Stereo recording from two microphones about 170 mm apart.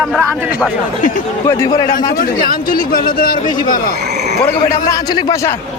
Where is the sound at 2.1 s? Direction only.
55° left (ahead or behind).